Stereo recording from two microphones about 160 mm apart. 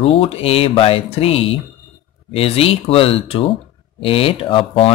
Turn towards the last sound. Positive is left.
turn(degrees=35)  # may be behind; listen again after turning